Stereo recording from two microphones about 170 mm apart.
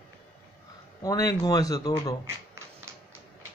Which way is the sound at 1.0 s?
20° left (ahead or behind).